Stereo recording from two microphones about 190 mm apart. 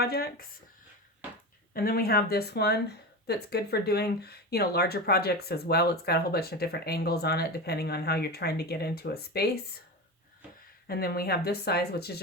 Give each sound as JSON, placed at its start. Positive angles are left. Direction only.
{"t": 0.0, "sound": "speech", "side_deg": 55}
{"t": 1.7, "sound": "speech", "side_deg": 50}
{"t": 10.8, "sound": "speech", "side_deg": 55}